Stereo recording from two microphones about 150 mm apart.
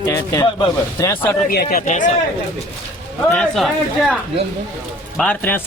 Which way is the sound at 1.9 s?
55° left (ahead or behind).